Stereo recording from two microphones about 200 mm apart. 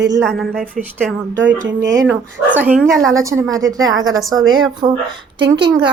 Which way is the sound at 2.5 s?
10° right (ahead or behind).